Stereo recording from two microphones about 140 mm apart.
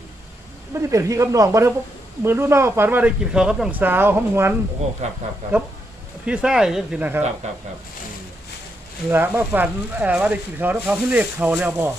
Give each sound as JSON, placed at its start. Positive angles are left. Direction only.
{"t": 0.7, "sound": "speech", "side_deg": -20}
{"t": 5.0, "sound": "speech", "side_deg": -55}
{"t": 6.2, "sound": "speech", "side_deg": -5}
{"t": 9.0, "sound": "speech", "side_deg": -15}